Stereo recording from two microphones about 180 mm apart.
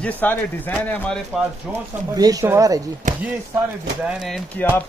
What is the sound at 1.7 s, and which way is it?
Speech, 10° right (ahead or behind).